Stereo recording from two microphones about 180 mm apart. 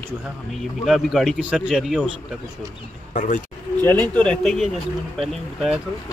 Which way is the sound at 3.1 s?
45° left (ahead or behind).